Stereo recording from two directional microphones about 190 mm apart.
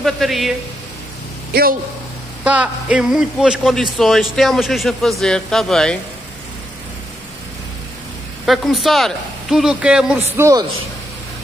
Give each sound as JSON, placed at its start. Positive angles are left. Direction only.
{"t": 0.0, "sound": "a man's voice", "side_deg": 0}
{"t": 1.5, "sound": "speech", "side_deg": -50}
{"t": 2.4, "sound": "a man's voice", "side_deg": -5}
{"t": 8.5, "sound": "a man's voice", "side_deg": 0}